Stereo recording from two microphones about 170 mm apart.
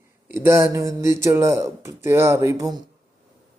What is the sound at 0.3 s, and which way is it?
Speech, 15° right (ahead or behind).